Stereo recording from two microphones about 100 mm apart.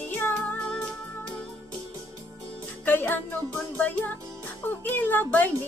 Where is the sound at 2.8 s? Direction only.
15° left (ahead or behind).